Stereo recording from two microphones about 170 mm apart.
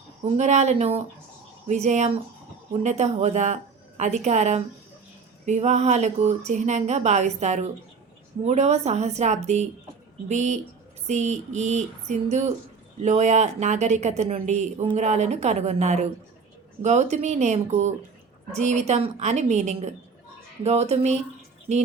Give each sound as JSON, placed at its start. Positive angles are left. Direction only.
{"t": 0.3, "sound": "a woman's voice", "side_deg": -45}